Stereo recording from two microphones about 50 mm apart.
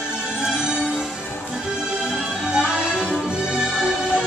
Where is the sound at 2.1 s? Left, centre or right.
Centre.